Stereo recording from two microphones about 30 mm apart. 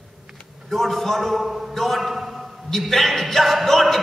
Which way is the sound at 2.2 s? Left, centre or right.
Centre.